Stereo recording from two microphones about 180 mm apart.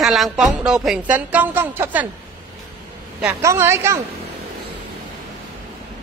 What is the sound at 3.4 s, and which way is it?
Speech, 15° right (ahead or behind).